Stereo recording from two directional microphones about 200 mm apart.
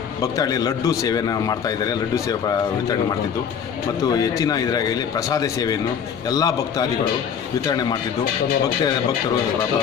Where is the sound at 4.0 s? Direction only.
20° left (ahead or behind).